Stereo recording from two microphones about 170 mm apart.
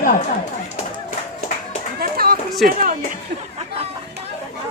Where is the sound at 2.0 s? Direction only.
60° right (ahead or behind).